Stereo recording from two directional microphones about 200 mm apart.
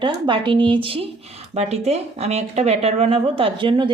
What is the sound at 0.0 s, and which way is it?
Speech, 25° right (ahead or behind).